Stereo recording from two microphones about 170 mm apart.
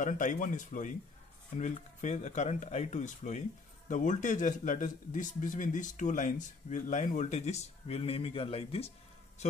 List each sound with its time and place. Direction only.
0.0 s speech: 45° left (ahead or behind)